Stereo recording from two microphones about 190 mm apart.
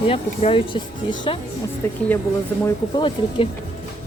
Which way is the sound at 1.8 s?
10° left (ahead or behind).